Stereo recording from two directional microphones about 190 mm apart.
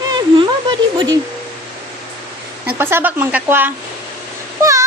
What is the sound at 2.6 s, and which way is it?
A woman's voice, 10° right (ahead or behind).